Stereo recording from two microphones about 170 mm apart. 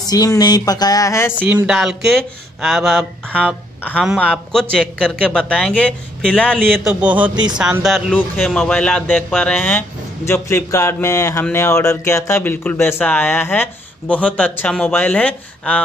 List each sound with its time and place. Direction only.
0.0 s speech: 20° left (ahead or behind)
1.4 s speech: 10° right (ahead or behind); by 15.8 s 5° left (ahead or behind)